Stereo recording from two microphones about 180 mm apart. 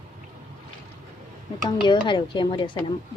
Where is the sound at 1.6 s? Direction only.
25° left (ahead or behind).